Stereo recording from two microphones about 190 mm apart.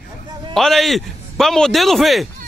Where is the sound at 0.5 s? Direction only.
Centre (ahead or behind).